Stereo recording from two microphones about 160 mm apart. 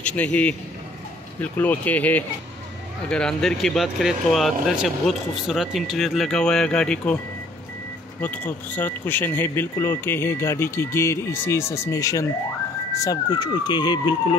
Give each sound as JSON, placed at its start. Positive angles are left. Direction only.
{"t": 0.0, "sound": "a man's voice", "side_deg": 10}
{"t": 8.2, "sound": "speech", "side_deg": 10}